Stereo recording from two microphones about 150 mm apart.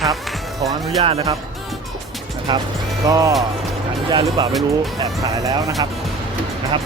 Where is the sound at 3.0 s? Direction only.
20° right (ahead or behind).